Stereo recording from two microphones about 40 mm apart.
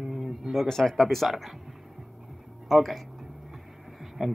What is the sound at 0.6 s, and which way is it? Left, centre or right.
Speech, centre.